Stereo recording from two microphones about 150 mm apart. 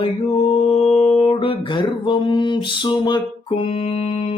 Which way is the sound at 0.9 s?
40° left (ahead or behind).